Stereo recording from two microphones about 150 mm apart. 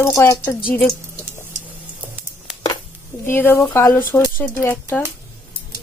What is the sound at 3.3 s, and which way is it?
A woman's voice, 15° left (ahead or behind).